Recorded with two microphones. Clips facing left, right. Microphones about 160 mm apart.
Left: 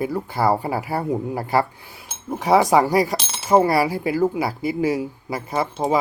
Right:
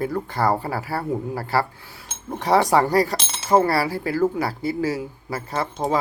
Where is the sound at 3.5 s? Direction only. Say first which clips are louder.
Left 2 dB; 15° left (ahead or behind).